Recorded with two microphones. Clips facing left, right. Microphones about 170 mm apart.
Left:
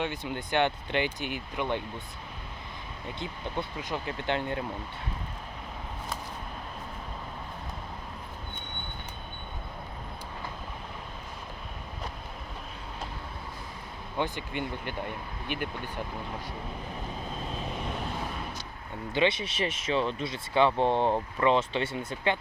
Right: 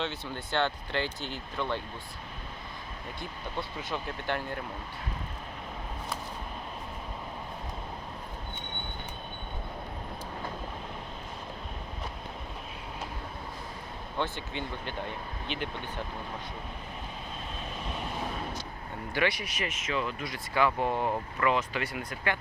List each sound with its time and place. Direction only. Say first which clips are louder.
0.0 s speech: left 2 dB; 15° left (ahead or behind)
3.2 s speech: left 3 dB; 20° left (ahead or behind)
14.2 s speech: left 2 dB; 15° left (ahead or behind)
19.1 s speech: left 3 dB; 20° left (ahead or behind)